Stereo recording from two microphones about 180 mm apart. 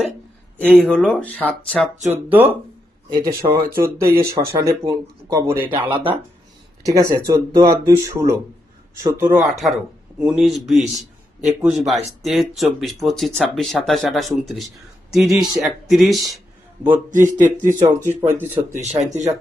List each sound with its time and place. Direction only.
0.6 s speech: 5° left (ahead or behind)
2.0 s speech: 10° right (ahead or behind)
3.1 s speech: 25° right (ahead or behind)
9.4 s speech: centre (ahead or behind)
17.4 s speech: 45° right (ahead or behind)
17.8 s speech: 15° right (ahead or behind)
18.7 s speech: 40° right (ahead or behind)